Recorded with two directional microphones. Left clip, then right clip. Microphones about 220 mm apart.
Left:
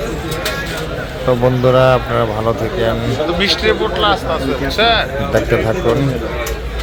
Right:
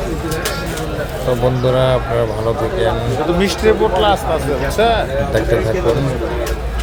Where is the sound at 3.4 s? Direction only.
30° right (ahead or behind).